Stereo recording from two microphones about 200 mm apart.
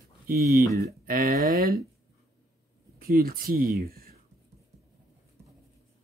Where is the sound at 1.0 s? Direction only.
45° right (ahead or behind).